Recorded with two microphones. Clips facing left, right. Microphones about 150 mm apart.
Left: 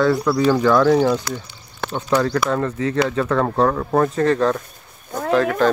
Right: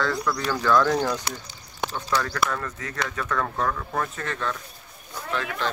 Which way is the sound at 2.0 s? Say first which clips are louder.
Left 8 dB; 35° left (ahead or behind).